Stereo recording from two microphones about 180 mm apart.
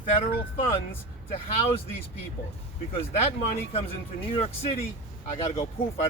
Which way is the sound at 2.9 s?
35° left (ahead or behind).